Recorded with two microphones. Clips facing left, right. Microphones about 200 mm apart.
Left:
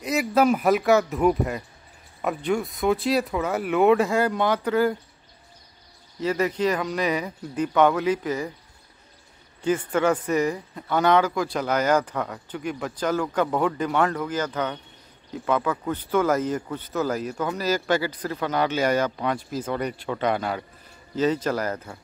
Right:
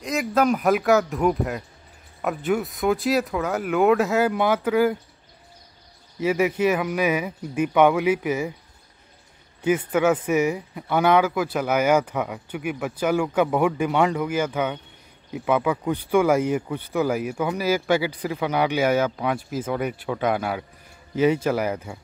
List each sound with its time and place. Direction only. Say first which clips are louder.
0.0 s speech: left 1 dB; 5° left (ahead or behind)
6.1 s speech: right 3 dB; 10° right (ahead or behind)
9.9 s speech: right 2 dB; 5° right (ahead or behind)